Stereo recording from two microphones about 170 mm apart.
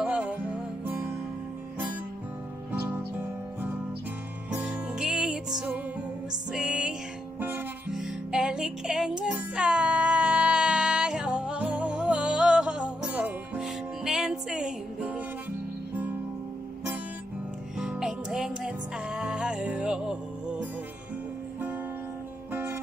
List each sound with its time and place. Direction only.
0.0 s music: 5° right (ahead or behind)
2.7 s music: 10° right (ahead or behind)
17.7 s music: 5° right (ahead or behind)
22.5 s music: 10° right (ahead or behind)